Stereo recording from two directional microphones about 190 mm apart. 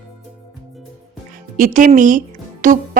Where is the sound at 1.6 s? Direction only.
40° right (ahead or behind).